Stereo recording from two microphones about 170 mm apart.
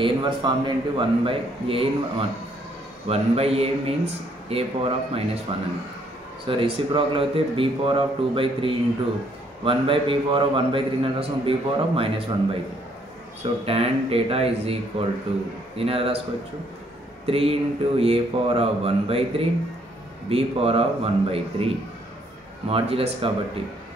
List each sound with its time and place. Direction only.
0.0 s a man's voice: 25° right (ahead or behind)
6.4 s a man's voice: 30° right (ahead or behind)
13.7 s a man's voice: 35° right (ahead or behind)
17.3 s a man's voice: 35° right (ahead or behind)
22.7 s a man's voice: 35° right (ahead or behind)